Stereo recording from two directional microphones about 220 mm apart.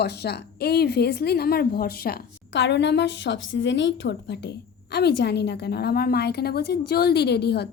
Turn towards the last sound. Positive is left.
turn(degrees=50)  # may be behind; listen again after turning